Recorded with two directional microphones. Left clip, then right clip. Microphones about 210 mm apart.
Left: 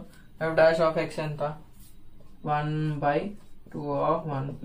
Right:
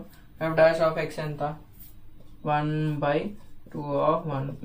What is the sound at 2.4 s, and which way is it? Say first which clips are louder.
Speech: right 2 dB; centre (ahead or behind).